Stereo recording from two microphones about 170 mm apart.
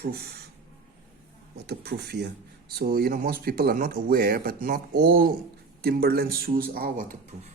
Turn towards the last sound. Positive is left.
turn(degrees=-55)  # may be behind; listen again after turning